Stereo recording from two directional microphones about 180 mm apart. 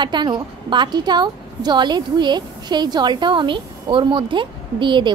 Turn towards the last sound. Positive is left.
turn(degrees=-25)  # may be behind; listen again after turning